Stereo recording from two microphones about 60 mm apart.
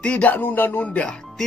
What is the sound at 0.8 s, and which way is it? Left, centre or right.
Speech, left.